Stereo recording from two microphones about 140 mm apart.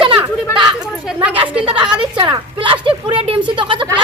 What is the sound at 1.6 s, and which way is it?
A woman's voice, 35° right (ahead or behind).